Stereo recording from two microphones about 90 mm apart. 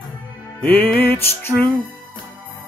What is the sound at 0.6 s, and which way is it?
Music, 20° left (ahead or behind).